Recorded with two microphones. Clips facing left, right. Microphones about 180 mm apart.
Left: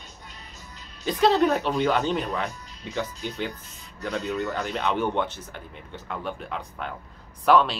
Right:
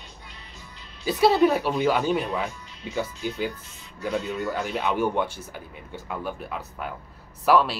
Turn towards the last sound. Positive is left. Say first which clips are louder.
# left 1 dB
turn(degrees=-5)  # may be behind; listen again after turning